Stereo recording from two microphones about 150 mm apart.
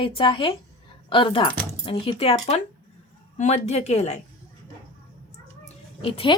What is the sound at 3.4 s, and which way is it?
Speech, 50° left (ahead or behind).